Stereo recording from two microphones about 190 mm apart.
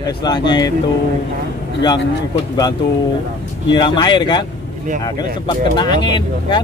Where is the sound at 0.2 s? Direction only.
20° left (ahead or behind).